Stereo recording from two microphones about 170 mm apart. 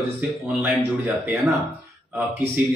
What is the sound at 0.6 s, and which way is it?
Speech, 5° right (ahead or behind).